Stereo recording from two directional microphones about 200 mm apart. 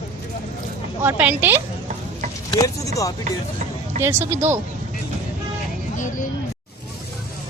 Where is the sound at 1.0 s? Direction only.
10° right (ahead or behind).